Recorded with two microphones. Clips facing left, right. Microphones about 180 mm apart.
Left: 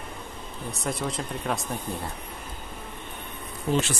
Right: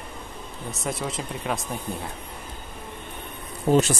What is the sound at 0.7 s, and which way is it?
Speech, centre (ahead or behind).